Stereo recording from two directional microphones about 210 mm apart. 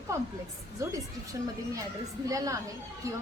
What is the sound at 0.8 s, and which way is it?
A woman's voice, 15° right (ahead or behind).